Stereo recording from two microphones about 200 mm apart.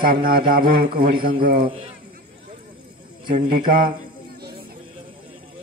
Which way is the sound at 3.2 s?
45° right (ahead or behind).